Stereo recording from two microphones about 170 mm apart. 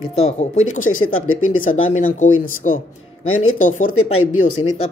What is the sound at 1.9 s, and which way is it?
Speech, 50° left (ahead or behind).